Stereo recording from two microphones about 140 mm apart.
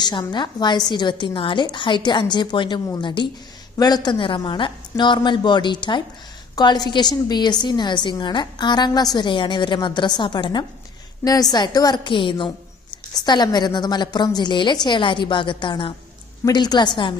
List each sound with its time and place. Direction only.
0.0 s a woman's voice: 30° left (ahead or behind)